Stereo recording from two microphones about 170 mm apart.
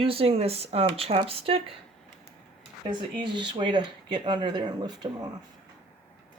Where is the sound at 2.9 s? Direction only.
25° right (ahead or behind).